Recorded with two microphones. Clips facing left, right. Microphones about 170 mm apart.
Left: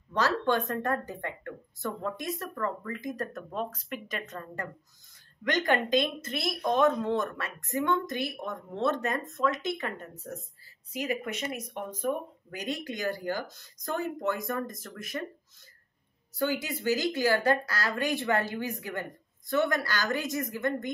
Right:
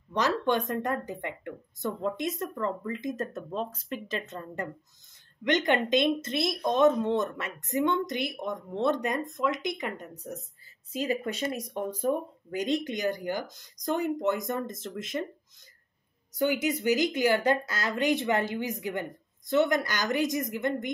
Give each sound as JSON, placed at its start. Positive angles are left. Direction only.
{"t": 0.1, "sound": "speech", "side_deg": -20}
{"t": 10.9, "sound": "speech", "side_deg": -25}
{"t": 16.3, "sound": "speech", "side_deg": -20}